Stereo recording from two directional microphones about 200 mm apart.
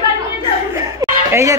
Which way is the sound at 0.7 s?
15° right (ahead or behind).